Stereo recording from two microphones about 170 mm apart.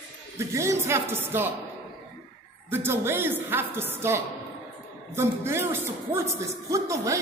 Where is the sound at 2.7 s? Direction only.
15° right (ahead or behind).